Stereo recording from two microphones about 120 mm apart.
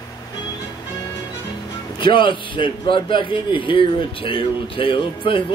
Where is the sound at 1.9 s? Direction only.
40° left (ahead or behind).